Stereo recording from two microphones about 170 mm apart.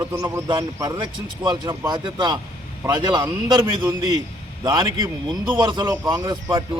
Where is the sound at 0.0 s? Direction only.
15° right (ahead or behind).